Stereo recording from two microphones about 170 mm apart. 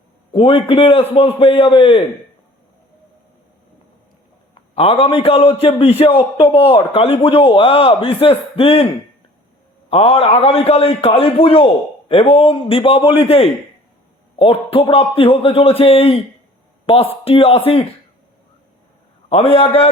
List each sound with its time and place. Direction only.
0.3 s a man's voice: 35° left (ahead or behind)
4.7 s a man's voice: 35° left (ahead or behind)
9.9 s a man's voice: 35° left (ahead or behind)
19.3 s a man's voice: 35° left (ahead or behind)